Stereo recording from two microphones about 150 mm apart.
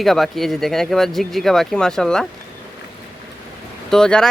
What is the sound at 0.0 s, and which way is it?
Speech, centre (ahead or behind).